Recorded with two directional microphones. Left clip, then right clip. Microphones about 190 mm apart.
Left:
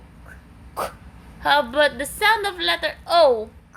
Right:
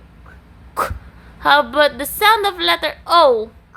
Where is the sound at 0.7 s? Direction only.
20° right (ahead or behind).